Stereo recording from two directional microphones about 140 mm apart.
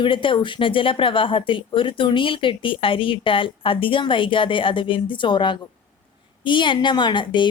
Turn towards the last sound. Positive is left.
turn(degrees=35)  # may be behind; listen again after turning